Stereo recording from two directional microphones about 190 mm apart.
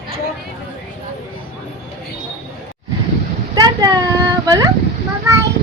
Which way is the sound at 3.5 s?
20° right (ahead or behind).